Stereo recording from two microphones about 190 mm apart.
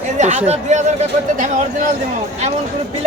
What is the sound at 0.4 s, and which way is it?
Speech, 35° right (ahead or behind).